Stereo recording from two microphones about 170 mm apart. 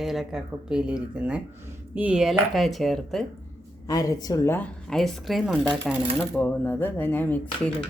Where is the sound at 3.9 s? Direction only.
20° left (ahead or behind).